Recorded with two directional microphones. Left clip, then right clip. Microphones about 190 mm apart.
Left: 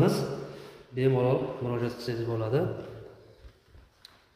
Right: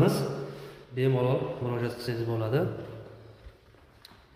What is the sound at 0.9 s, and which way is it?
Speech, 20° left (ahead or behind).